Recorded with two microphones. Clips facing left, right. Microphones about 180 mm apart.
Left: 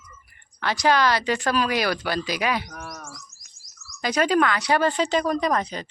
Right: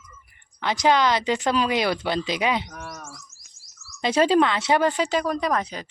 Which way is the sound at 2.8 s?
15° left (ahead or behind).